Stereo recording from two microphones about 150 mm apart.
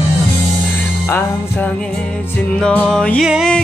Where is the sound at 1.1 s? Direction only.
10° left (ahead or behind).